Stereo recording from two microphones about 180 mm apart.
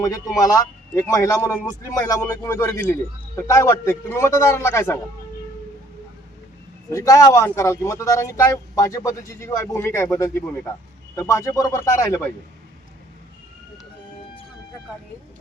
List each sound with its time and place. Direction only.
0.0 s a man's voice: 20° left (ahead or behind)
6.9 s speech: 15° left (ahead or behind)